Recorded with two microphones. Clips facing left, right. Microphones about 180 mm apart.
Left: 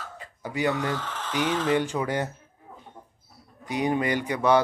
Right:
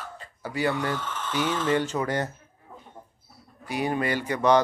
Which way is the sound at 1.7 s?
15° left (ahead or behind).